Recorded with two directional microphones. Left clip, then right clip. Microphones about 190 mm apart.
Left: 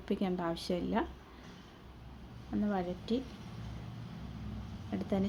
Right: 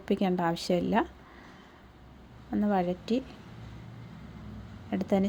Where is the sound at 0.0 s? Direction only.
35° right (ahead or behind).